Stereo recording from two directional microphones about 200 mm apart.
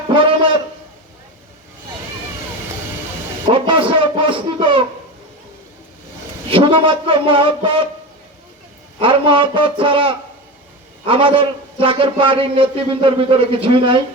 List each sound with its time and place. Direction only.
0.1 s a sound: 25° right (ahead or behind)
3.7 s a man's voice: 25° right (ahead or behind)
6.5 s a man's voice: 25° right (ahead or behind)
9.0 s a man's voice: 25° right (ahead or behind)